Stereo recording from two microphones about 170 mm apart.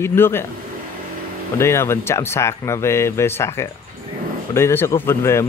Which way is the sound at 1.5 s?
15° left (ahead or behind).